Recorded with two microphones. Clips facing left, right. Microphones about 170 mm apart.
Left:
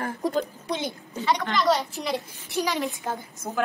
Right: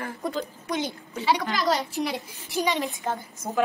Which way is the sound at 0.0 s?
40° left (ahead or behind).